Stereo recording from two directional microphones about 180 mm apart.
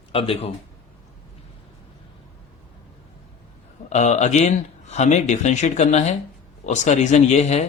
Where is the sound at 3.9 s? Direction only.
40° left (ahead or behind).